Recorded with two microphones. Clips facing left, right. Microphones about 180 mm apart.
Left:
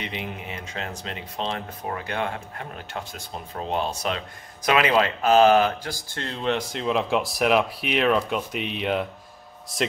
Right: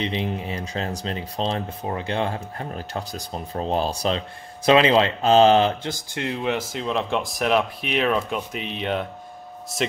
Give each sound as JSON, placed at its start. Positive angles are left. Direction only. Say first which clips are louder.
{"t": 0.0, "sound": "speech", "louder": "right 7 dB", "side_deg": -30}